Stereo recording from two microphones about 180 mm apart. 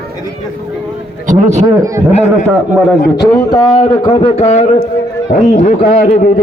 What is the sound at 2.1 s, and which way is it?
Speech, 35° left (ahead or behind).